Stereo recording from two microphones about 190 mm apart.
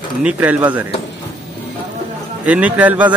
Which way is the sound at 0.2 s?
5° right (ahead or behind).